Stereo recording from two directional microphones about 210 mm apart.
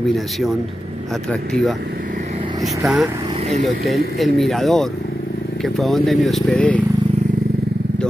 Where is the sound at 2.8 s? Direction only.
Centre (ahead or behind).